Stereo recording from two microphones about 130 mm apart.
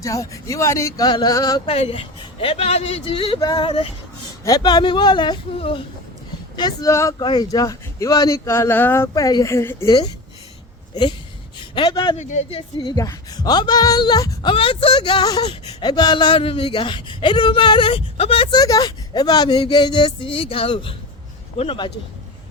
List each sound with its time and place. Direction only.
0.0 s speech: 25° left (ahead or behind)
1.7 s a man's voice: 50° left (ahead or behind)
3.4 s speech: 35° left (ahead or behind)
4.4 s speech: 30° left (ahead or behind)
6.6 s speech: 35° left (ahead or behind)
6.9 s speech: 20° left (ahead or behind)
7.2 s speech: 35° left (ahead or behind)
11.7 s speech: 35° left (ahead or behind)
12.1 s speech: 65° left (ahead or behind)
12.5 s a man's voice: 45° left (ahead or behind)
12.9 s speech: 30° left (ahead or behind)
14.5 s speech: 45° left (ahead or behind)
18.5 s speech: 30° left (ahead or behind)